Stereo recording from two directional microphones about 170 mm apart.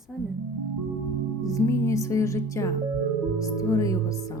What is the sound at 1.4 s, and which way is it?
Speech, 20° left (ahead or behind).